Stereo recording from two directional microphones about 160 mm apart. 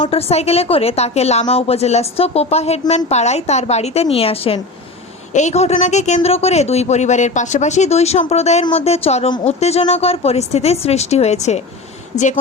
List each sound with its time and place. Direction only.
0.0 s a woman's voice: 40° left (ahead or behind)
5.3 s a woman's voice: 45° left (ahead or behind)